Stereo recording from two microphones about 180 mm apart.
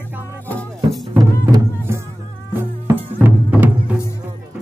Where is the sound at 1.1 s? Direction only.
20° right (ahead or behind).